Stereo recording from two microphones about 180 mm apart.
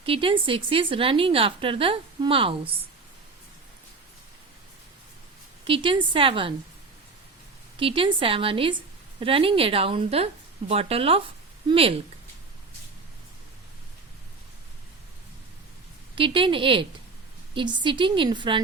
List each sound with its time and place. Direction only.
0.0 s a woman's voice: 30° right (ahead or behind)
5.6 s a woman's voice: 30° right (ahead or behind)
7.8 s a woman's voice: 30° right (ahead or behind)
16.1 s a woman's voice: 30° right (ahead or behind)